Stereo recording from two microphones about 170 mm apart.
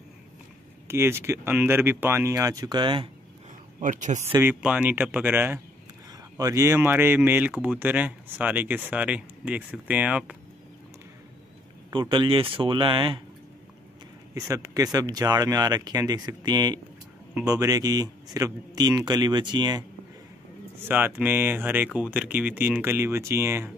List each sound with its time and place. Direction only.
0.8 s speech: 15° right (ahead or behind)
3.8 s speech: 50° right (ahead or behind)
4.2 s speech: 15° right (ahead or behind)
11.9 s a man's voice: 30° right (ahead or behind)
14.5 s a man's voice: 20° right (ahead or behind)
20.8 s speech: 10° right (ahead or behind)